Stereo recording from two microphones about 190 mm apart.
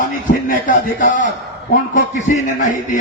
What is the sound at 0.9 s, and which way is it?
Speech, 45° left (ahead or behind).